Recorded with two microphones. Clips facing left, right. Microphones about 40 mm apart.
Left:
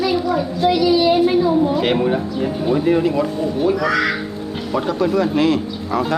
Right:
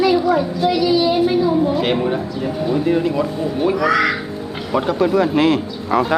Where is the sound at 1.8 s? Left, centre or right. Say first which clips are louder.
Left 1 dB; centre.